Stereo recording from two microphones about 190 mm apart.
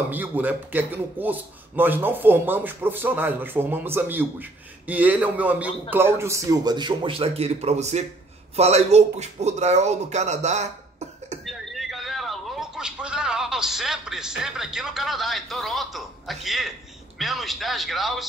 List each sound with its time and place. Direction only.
0.1 s speech: 10° right (ahead or behind); by 11.3 s 35° right (ahead or behind)
11.4 s a sound: centre (ahead or behind)
16.4 s speech: centre (ahead or behind)